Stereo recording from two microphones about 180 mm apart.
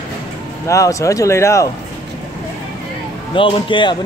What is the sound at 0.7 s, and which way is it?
Speech, 15° left (ahead or behind).